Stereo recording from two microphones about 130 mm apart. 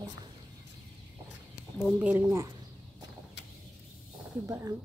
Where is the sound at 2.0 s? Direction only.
15° right (ahead or behind).